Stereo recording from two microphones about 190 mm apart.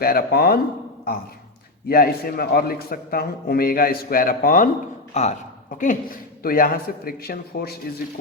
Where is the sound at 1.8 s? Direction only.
50° left (ahead or behind).